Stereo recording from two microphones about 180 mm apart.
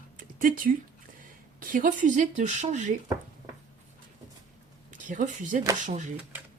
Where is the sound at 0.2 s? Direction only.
50° right (ahead or behind).